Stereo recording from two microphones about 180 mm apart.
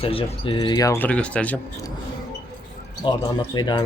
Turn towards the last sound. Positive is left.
turn(degrees=25)  # may be behind; listen again after turning